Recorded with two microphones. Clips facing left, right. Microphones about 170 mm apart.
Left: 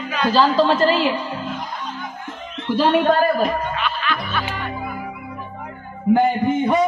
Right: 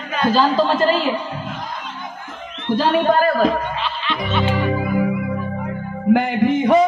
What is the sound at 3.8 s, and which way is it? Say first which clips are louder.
Music: even; 25° right (ahead or behind).